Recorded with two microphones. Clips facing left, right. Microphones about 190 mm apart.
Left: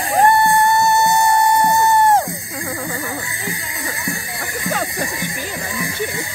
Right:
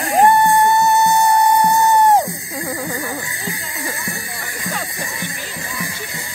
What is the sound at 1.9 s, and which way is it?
Music, 15° right (ahead or behind).